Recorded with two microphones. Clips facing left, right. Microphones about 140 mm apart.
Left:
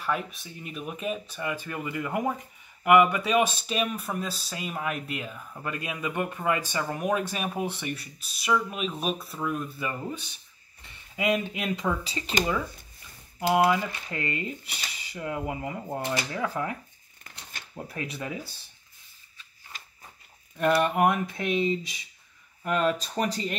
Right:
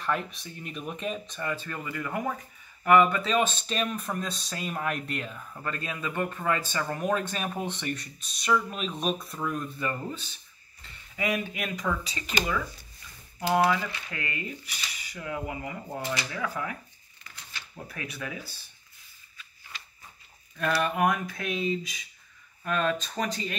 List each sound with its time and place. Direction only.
0.0 s speech: 5° left (ahead or behind); by 12.4 s 30° left (ahead or behind)
13.5 s speech: 20° left (ahead or behind)
13.8 s speech: 30° left (ahead or behind)
17.2 s shuffling cards: 45° left (ahead or behind)
17.8 s speech: 30° left (ahead or behind)
19.7 s a sound: 45° left (ahead or behind)
20.5 s speech: 20° left (ahead or behind)